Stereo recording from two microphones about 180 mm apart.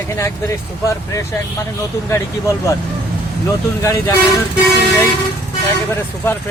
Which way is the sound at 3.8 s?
15° left (ahead or behind).